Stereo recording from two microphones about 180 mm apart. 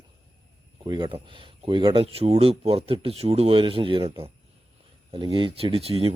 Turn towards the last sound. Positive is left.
turn(degrees=-35)  # may be behind; listen again after turning